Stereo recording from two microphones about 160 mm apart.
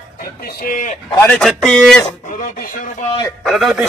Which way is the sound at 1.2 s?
5° left (ahead or behind).